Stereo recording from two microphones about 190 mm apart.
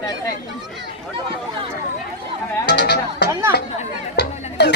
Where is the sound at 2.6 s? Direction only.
65° left (ahead or behind).